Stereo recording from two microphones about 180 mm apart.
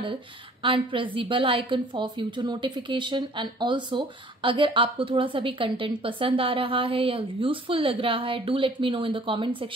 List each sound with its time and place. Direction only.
0.0 s a woman's voice: 30° right (ahead or behind)